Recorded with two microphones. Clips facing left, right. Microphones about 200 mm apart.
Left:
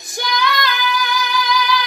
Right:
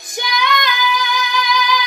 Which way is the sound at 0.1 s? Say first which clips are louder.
Right 1 dB; 20° right (ahead or behind).